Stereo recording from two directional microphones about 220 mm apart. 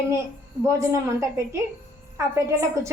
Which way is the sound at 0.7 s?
10° right (ahead or behind).